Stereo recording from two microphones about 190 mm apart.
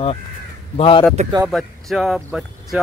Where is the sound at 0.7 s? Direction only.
30° left (ahead or behind).